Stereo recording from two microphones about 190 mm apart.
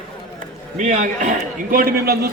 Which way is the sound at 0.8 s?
40° right (ahead or behind).